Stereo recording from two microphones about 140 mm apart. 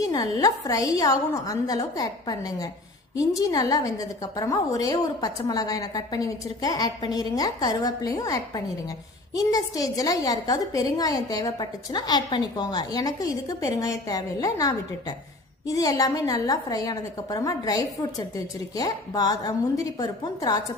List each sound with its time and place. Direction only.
0.0 s a woman's voice: 25° left (ahead or behind)